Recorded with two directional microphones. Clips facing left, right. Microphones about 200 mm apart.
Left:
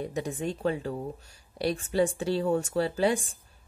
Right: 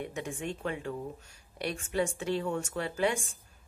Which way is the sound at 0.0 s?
35° left (ahead or behind).